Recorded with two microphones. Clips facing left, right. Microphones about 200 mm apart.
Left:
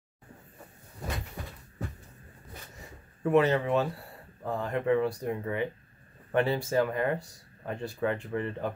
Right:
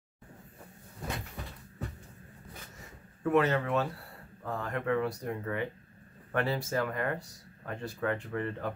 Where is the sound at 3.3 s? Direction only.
20° left (ahead or behind).